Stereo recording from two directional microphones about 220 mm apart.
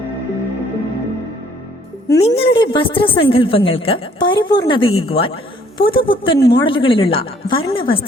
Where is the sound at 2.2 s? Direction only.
25° left (ahead or behind).